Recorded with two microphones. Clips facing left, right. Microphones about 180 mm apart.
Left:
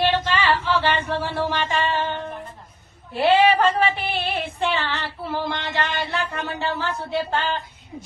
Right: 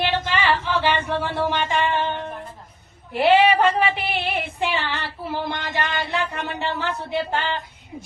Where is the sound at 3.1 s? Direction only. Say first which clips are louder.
Right 1 dB; 15° right (ahead or behind).